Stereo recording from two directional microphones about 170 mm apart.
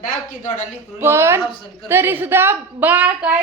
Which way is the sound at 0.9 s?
15° right (ahead or behind).